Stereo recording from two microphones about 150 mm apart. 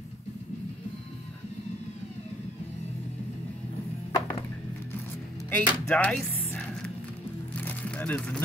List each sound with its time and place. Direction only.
4.1 s music: 30° left (ahead or behind)
5.5 s music: 10° left (ahead or behind)